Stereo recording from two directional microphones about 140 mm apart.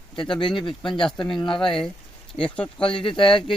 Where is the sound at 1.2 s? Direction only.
35° left (ahead or behind).